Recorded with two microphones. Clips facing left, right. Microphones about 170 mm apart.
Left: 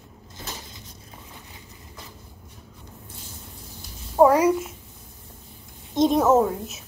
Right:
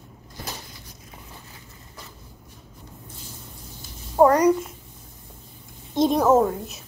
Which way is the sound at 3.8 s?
Centre (ahead or behind).